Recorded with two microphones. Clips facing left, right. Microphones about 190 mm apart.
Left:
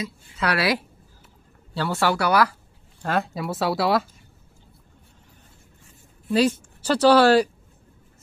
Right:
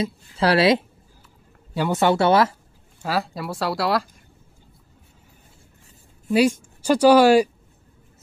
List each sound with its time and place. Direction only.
0.0 s speech: 30° right (ahead or behind)
3.0 s speech: centre (ahead or behind)
6.3 s speech: 10° right (ahead or behind)